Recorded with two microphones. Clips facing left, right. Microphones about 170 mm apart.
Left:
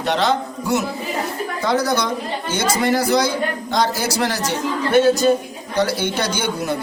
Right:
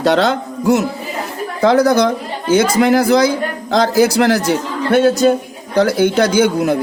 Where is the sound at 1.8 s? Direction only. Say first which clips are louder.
Right 9 dB; 50° right (ahead or behind).